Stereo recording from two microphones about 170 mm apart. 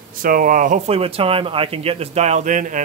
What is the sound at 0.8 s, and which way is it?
Speech, 35° right (ahead or behind).